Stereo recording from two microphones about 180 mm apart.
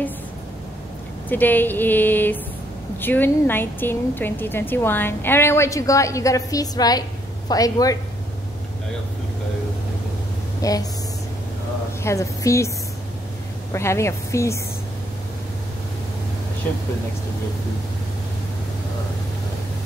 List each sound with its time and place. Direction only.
1.3 s a woman's voice: 10° left (ahead or behind)
10.6 s speech: 20° left (ahead or behind)
12.0 s a woman's voice: 15° left (ahead or behind)
13.7 s a woman's voice: 15° left (ahead or behind)